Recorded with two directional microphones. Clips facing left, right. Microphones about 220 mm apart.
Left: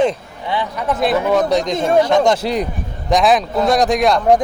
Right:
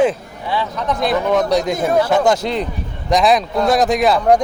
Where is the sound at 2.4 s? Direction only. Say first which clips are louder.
Left 1 dB; 10° left (ahead or behind).